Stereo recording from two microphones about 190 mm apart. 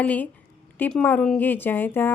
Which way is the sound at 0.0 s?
10° left (ahead or behind).